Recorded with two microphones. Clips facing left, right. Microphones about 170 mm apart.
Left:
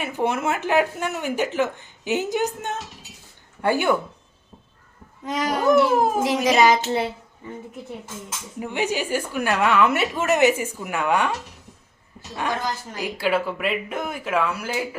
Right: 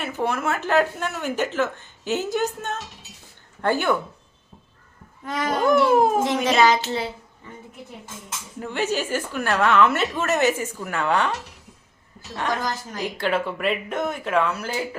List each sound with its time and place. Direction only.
0.0 s a woman's voice: 20° left (ahead or behind)
5.2 s a woman's voice: 15° left (ahead or behind)
8.5 s a woman's voice: 15° left (ahead or behind)
12.1 s a sound: 10° left (ahead or behind)
13.0 s a woman's voice: 5° left (ahead or behind)